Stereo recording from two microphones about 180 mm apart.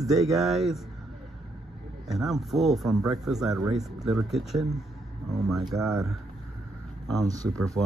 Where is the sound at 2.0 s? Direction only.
Centre (ahead or behind).